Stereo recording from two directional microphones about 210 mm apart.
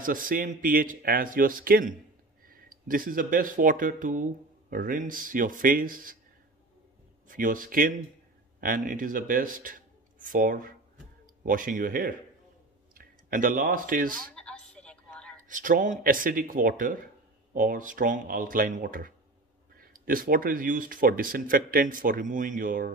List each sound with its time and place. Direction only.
0.0 s speech: 40° right (ahead or behind)
7.2 s speech: 40° right (ahead or behind)
14.3 s a sound: 5° left (ahead or behind)
15.4 s speech: 40° right (ahead or behind)